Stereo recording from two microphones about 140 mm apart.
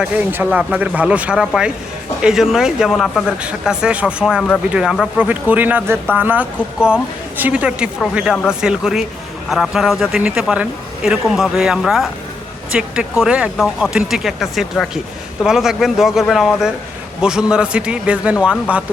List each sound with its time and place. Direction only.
0.0 s a woman's voice: 10° right (ahead or behind)